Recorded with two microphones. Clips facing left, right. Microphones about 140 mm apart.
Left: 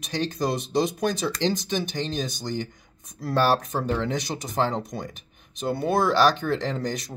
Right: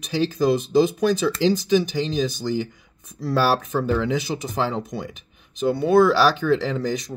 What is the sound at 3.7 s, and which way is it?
Speech, 25° left (ahead or behind).